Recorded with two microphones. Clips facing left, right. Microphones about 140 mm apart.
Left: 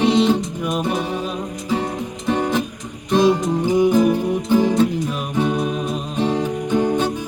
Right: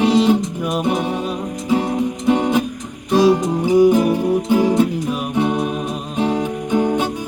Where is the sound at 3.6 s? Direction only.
10° right (ahead or behind).